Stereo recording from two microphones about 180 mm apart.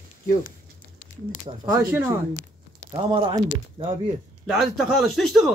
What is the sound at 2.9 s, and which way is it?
Speech, 30° right (ahead or behind).